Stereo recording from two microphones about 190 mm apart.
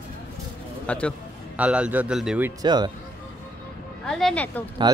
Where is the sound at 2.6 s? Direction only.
20° right (ahead or behind).